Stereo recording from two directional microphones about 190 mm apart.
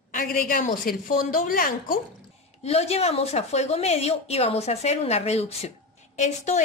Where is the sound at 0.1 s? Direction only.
45° left (ahead or behind).